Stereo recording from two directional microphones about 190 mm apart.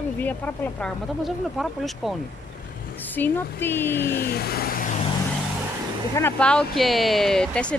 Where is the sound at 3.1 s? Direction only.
10° left (ahead or behind).